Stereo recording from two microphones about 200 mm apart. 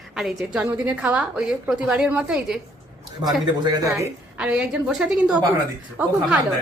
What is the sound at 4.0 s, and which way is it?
A woman's voice, 5° right (ahead or behind).